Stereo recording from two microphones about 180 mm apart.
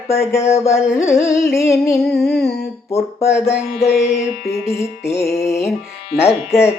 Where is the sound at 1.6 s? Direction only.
15° left (ahead or behind).